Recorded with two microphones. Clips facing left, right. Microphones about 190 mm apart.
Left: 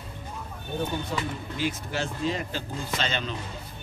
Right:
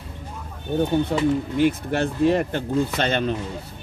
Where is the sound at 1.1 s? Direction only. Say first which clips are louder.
Right 11 dB; 60° right (ahead or behind).